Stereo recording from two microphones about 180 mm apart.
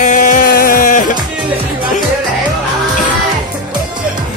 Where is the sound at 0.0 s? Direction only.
45° left (ahead or behind).